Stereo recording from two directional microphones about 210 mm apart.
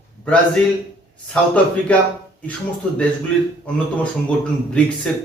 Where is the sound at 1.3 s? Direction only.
5° left (ahead or behind).